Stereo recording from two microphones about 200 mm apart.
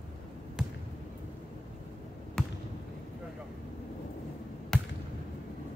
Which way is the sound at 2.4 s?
5° left (ahead or behind).